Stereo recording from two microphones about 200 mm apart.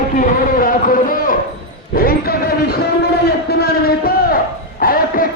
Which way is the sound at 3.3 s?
50° left (ahead or behind).